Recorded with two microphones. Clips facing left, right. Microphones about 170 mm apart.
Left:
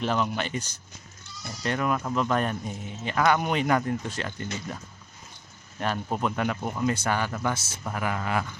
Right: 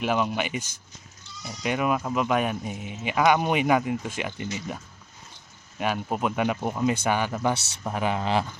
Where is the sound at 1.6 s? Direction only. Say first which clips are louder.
Right 2 dB; 15° right (ahead or behind).